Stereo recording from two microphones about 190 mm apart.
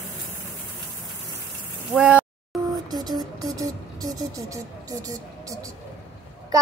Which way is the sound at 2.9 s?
20° right (ahead or behind).